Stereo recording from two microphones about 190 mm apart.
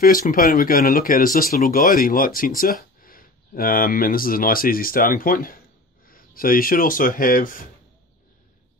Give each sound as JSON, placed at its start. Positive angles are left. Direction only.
{"t": 0.0, "sound": "speech", "side_deg": 50}